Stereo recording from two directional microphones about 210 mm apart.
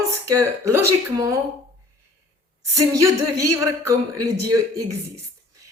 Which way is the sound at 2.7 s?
15° right (ahead or behind).